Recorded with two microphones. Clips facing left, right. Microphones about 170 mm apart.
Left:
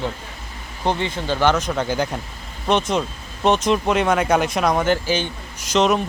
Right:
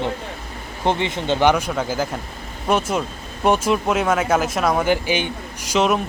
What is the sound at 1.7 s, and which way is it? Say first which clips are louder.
Speech: left 1 dB; 5° right (ahead or behind).